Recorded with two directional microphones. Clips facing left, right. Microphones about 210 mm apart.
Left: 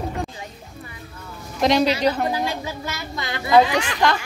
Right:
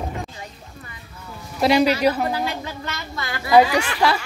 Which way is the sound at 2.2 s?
10° left (ahead or behind).